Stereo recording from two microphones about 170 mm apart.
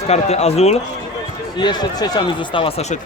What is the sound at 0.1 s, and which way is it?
Speech, 40° left (ahead or behind).